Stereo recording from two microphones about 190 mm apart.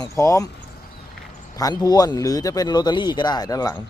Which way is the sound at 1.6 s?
20° left (ahead or behind).